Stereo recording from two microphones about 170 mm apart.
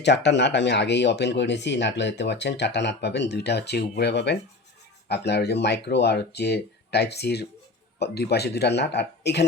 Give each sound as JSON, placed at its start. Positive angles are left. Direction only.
{"t": 0.0, "sound": "speech", "side_deg": 90}